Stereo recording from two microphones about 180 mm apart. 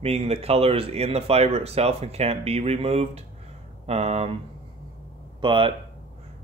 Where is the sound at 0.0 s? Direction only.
35° right (ahead or behind).